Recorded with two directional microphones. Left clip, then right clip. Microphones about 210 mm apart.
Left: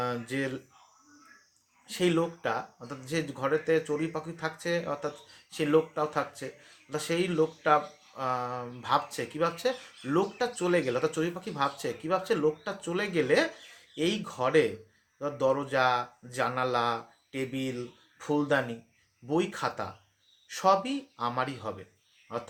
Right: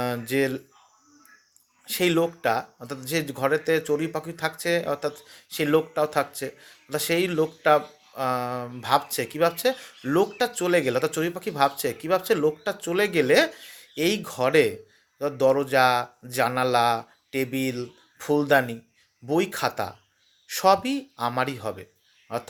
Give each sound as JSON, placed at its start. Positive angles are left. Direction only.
{"t": 0.0, "sound": "speech", "side_deg": -45}
{"t": 1.9, "sound": "speech", "side_deg": -45}